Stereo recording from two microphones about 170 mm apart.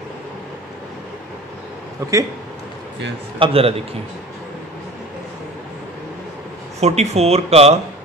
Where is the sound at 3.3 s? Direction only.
35° right (ahead or behind).